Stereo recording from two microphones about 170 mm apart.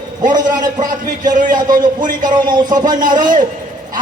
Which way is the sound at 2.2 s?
25° right (ahead or behind).